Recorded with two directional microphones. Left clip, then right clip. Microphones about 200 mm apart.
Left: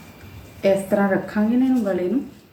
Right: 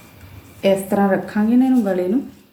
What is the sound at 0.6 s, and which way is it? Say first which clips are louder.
Speech: right 2 dB; 25° right (ahead or behind).